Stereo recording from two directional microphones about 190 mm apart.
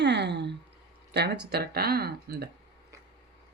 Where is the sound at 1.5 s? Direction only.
55° right (ahead or behind).